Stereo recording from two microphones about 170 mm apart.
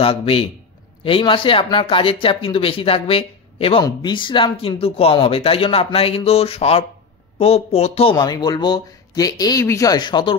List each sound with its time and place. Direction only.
0.0 s speech: 35° left (ahead or behind)